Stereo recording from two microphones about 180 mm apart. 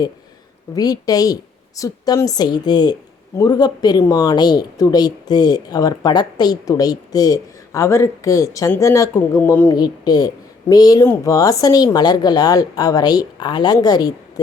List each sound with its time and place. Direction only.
0.8 s speech: 20° left (ahead or behind)